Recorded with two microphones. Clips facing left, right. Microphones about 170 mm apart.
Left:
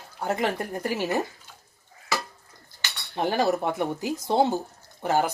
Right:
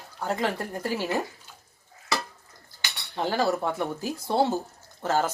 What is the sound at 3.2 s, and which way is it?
Speech, 15° left (ahead or behind).